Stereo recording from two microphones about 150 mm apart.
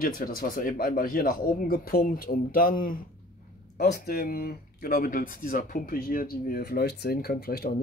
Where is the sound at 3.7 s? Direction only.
90° left.